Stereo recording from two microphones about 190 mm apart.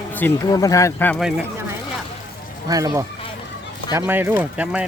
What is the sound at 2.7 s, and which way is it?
Speech, 20° right (ahead or behind).